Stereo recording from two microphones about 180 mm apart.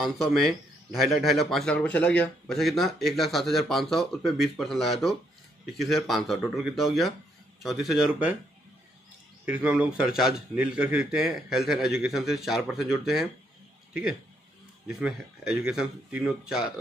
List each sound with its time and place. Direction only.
0.0 s speech: centre (ahead or behind)
9.5 s speech: 10° right (ahead or behind)
14.9 s speech: 5° right (ahead or behind)